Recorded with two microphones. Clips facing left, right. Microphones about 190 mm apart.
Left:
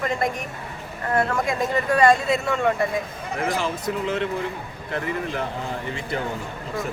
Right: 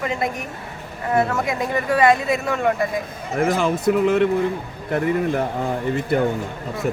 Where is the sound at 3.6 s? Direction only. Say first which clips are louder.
Right 8 dB; 55° right (ahead or behind).